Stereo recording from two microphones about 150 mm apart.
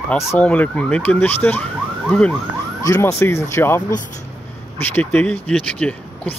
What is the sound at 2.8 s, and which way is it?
Speech, 20° left (ahead or behind).